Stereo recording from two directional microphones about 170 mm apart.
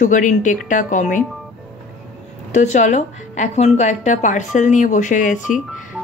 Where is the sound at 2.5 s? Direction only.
45° left (ahead or behind).